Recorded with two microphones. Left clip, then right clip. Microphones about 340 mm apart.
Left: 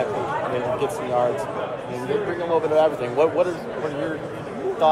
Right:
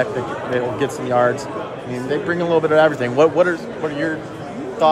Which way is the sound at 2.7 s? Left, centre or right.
Right.